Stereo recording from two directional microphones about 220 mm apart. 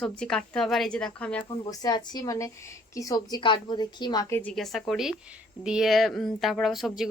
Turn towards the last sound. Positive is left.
turn(degrees=0)  # may be behind; listen again after turning